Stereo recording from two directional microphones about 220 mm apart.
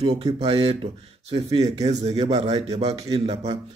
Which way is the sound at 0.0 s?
25° right (ahead or behind).